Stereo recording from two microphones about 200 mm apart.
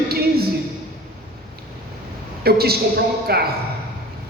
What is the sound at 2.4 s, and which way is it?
A woman's voice, 50° right (ahead or behind).